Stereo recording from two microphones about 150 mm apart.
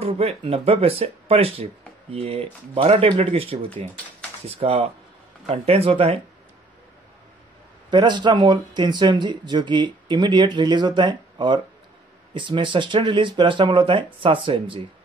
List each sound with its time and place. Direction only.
0.0 s speech: 45° right (ahead or behind)
7.9 s speech: 30° right (ahead or behind)